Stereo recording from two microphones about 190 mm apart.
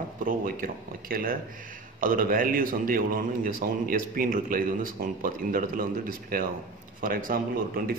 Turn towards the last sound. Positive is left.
turn(degrees=-50)  # may be behind; listen again after turning